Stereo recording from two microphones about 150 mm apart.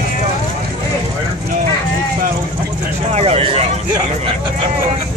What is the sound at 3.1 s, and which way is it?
Vehicle, 45° right (ahead or behind).